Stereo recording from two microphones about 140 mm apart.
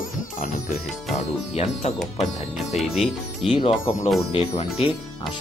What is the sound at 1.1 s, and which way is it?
Speech, 50° left (ahead or behind).